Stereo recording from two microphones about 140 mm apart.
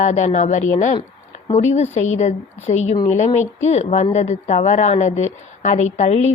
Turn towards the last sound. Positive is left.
turn(degrees=50)  # may be behind; listen again after turning